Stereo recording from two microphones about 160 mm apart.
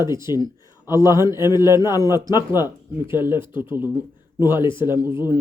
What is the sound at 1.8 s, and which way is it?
Speech, 25° left (ahead or behind).